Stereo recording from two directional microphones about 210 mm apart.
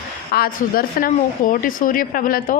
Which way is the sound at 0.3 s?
45° left (ahead or behind).